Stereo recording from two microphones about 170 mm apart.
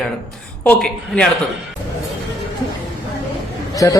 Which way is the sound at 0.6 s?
10° left (ahead or behind).